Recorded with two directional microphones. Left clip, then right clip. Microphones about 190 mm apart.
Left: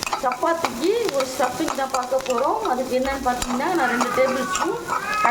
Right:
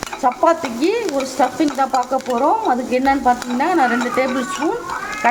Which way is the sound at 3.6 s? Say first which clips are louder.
Right 5 dB; 40° right (ahead or behind).